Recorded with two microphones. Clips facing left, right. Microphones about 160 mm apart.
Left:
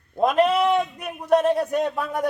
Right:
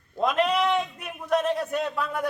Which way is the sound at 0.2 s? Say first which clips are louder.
Left 5 dB; 45° left (ahead or behind).